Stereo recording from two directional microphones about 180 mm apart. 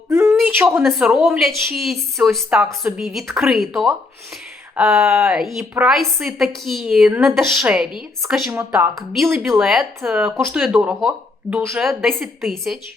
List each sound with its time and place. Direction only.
0.1 s a sound: 15° right (ahead or behind)
0.8 s a woman's voice: centre (ahead or behind)
11.5 s speech: 15° right (ahead or behind)
12.0 s a woman's voice: centre (ahead or behind)